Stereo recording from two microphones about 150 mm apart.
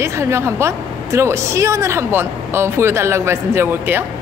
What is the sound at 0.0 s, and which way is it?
A woman's voice, 20° right (ahead or behind).